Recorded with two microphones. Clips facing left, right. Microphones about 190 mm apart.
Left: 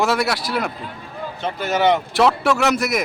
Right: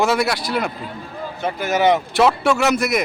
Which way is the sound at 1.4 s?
10° right (ahead or behind).